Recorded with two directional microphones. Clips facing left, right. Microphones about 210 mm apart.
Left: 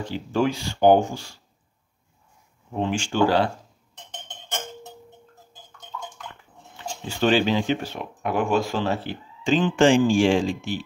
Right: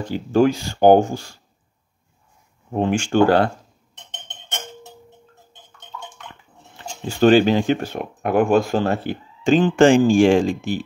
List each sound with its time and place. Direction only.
0.0 s speech: 45° right (ahead or behind)
2.7 s speech: 50° right (ahead or behind)
7.1 s speech: 45° right (ahead or behind)